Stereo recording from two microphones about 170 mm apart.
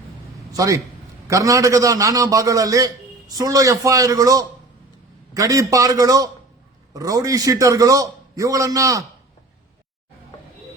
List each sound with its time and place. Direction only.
0.5 s a man's voice: 20° right (ahead or behind)